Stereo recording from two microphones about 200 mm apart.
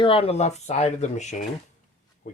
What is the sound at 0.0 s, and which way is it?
Speech, 25° left (ahead or behind).